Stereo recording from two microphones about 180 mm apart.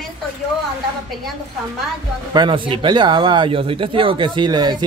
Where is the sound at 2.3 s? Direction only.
25° right (ahead or behind).